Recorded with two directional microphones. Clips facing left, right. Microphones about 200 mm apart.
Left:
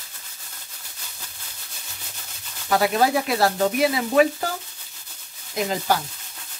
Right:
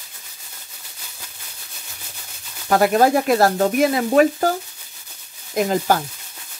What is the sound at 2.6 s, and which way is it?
Speech, 50° right (ahead or behind).